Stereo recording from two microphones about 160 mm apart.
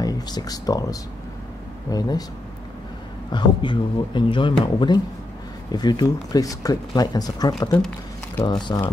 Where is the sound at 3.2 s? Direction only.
30° left (ahead or behind).